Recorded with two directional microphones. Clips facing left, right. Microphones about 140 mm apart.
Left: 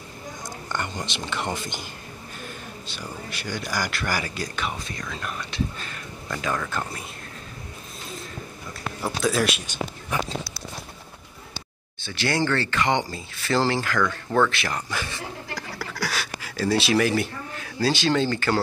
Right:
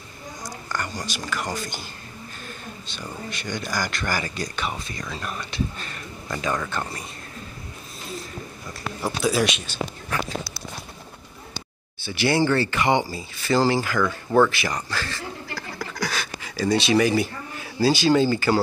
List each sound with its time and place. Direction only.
0.7 s speech: 25° left (ahead or behind)
2.9 s speech: 5° left (ahead or behind)
9.0 s speech: centre (ahead or behind)
9.7 s speech: 15° left (ahead or behind)
12.0 s speech: 10° right (ahead or behind)
14.9 s speech: 15° left (ahead or behind)
15.8 s pant: 5° left (ahead or behind)
16.5 s speech: 5° left (ahead or behind)